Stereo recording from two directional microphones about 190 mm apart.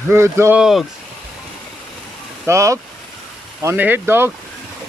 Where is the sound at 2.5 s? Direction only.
15° right (ahead or behind).